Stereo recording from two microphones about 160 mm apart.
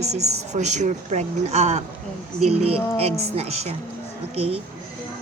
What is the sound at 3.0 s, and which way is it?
Speech, 40° right (ahead or behind).